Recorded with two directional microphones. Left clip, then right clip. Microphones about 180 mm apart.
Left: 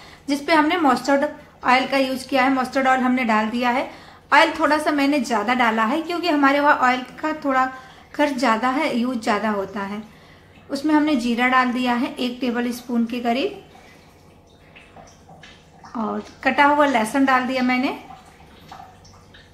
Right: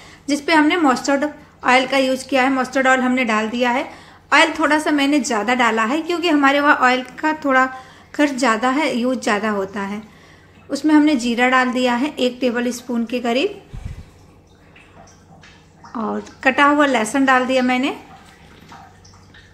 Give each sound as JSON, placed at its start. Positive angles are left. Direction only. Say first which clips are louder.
{"t": 0.3, "sound": "a woman's voice", "louder": "right 2 dB", "side_deg": -15}
{"t": 15.9, "sound": "a woman's voice", "louder": "right 2 dB", "side_deg": -15}